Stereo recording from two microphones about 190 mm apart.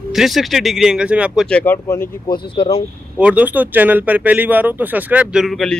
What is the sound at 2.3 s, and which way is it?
Speech, 25° left (ahead or behind).